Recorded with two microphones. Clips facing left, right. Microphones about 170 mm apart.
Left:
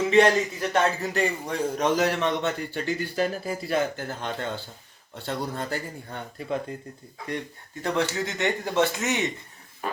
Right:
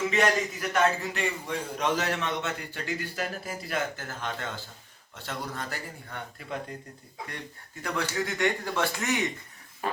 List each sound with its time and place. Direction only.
0.1 s a man's voice: 30° left (ahead or behind)
7.8 s speech: 25° left (ahead or behind)